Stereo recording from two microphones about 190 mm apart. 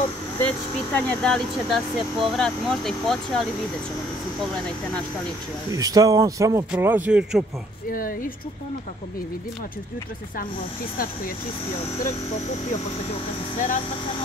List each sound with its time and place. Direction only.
0.4 s speech: 10° left (ahead or behind)
5.7 s speech: 20° right (ahead or behind)
7.9 s speech: 50° left (ahead or behind)
13.1 s speech: 40° left (ahead or behind)